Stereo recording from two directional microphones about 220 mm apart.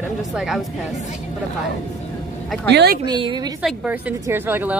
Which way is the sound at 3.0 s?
20° right (ahead or behind).